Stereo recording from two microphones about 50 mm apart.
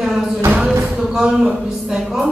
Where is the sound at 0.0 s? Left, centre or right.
Centre.